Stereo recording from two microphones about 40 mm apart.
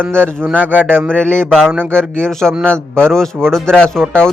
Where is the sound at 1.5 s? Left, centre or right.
Centre.